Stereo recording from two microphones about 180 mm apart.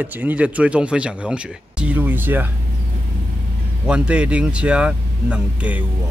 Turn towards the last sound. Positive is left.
turn(degrees=-5)  # may be behind; listen again after turning